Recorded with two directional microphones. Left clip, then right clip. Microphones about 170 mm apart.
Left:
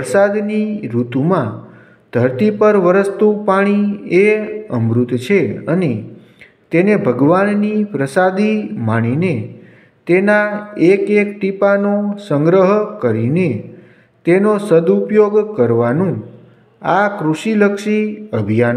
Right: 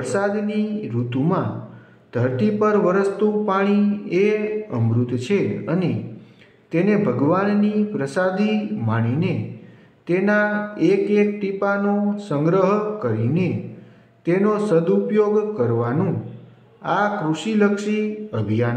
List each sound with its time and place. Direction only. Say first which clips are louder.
0.0 s speech: left 9 dB; 25° left (ahead or behind)